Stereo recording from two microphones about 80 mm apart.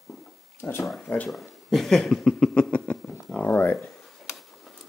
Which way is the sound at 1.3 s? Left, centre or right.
Centre.